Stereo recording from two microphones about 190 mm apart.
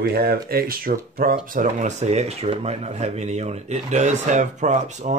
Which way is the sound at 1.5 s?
40° right (ahead or behind).